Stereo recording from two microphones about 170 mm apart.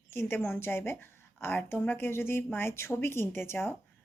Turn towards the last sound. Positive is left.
turn(degrees=15)  # may be behind; listen again after turning